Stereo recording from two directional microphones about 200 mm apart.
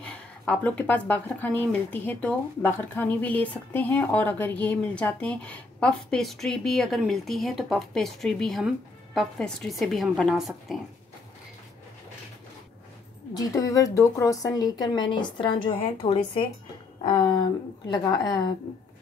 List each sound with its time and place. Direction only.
0.0 s speech: 5° left (ahead or behind)
13.3 s speech: 20° left (ahead or behind)